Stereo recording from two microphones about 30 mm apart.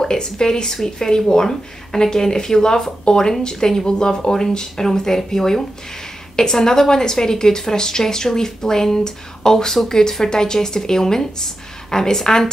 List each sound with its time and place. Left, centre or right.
0.0 s speech: left